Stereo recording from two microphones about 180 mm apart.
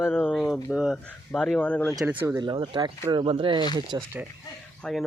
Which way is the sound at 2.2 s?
20° right (ahead or behind).